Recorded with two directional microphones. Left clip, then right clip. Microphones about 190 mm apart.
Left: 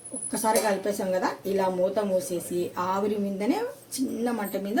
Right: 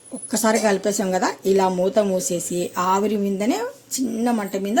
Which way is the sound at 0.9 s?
55° right (ahead or behind).